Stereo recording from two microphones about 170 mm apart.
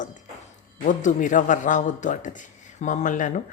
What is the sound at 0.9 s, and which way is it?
Speech, 50° left (ahead or behind).